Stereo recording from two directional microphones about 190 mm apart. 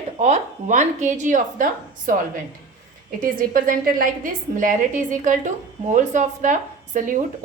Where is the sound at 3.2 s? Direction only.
45° right (ahead or behind).